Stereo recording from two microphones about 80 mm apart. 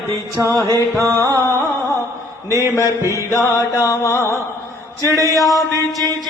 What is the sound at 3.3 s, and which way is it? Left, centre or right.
Mantra, left.